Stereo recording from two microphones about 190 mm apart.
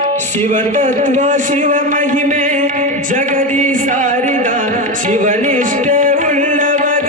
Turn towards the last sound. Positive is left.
turn(degrees=-45)  # may be behind; listen again after turning